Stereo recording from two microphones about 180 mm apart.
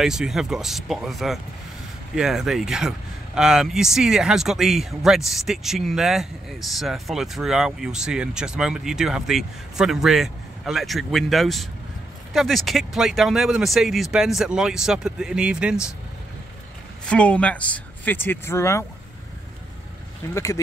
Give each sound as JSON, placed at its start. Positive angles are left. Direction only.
{"t": 0.0, "sound": "speech", "side_deg": 0}
{"t": 17.1, "sound": "speech", "side_deg": 5}
{"t": 20.3, "sound": "speech", "side_deg": 15}